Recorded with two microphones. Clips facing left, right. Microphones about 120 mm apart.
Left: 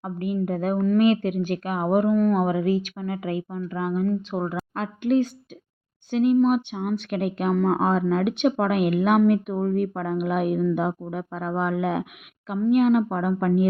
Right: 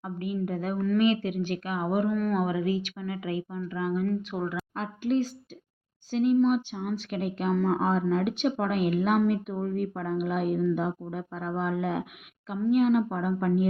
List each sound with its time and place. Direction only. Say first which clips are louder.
0.0 s speech: left 5 dB; 45° left (ahead or behind)
4.1 s speech: left 4 dB; 30° left (ahead or behind)
4.7 s a woman's voice: left 6 dB; 70° left (ahead or behind)